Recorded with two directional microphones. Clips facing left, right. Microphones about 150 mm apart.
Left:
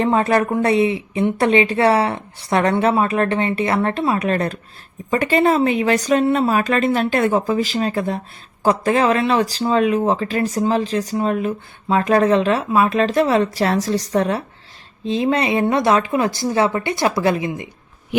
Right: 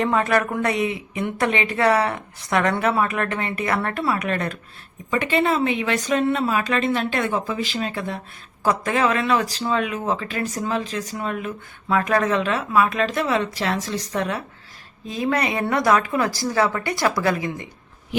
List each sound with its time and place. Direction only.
0.0 s a woman's voice: 30° left (ahead or behind)